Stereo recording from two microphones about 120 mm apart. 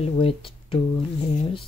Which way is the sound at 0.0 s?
55° left (ahead or behind).